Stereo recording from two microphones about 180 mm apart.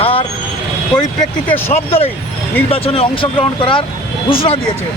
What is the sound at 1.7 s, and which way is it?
Speech, 35° left (ahead or behind).